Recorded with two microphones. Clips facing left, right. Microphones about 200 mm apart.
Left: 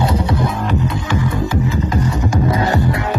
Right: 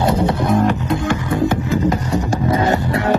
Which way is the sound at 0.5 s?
50° right (ahead or behind).